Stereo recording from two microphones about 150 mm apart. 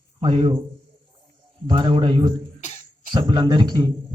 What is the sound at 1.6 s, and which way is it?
A man's voice, 35° right (ahead or behind).